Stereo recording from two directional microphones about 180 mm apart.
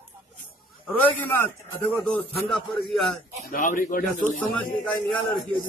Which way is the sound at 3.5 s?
50° left (ahead or behind).